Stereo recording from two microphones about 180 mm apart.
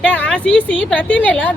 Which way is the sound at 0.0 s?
5° left (ahead or behind).